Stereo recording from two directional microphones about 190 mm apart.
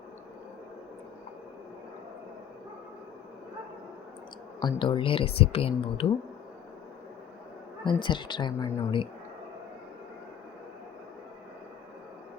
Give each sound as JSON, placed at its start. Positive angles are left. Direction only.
{"t": 4.6, "sound": "speech", "side_deg": 25}
{"t": 7.9, "sound": "speech", "side_deg": 25}